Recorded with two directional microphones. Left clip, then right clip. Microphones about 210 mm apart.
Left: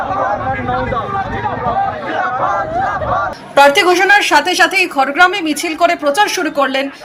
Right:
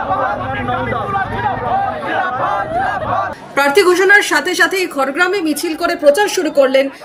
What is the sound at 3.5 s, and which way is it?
Speech, 5° left (ahead or behind).